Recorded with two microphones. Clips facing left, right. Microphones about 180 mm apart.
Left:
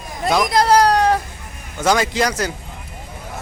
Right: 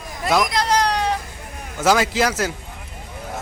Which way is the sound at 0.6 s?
45° left (ahead or behind).